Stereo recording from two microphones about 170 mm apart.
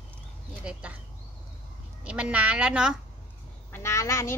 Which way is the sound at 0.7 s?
5° right (ahead or behind).